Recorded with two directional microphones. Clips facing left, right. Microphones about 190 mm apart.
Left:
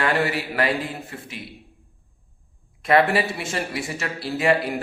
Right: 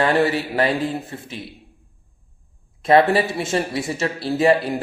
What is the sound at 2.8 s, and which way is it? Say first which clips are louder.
Speech: right 4 dB; 30° right (ahead or behind).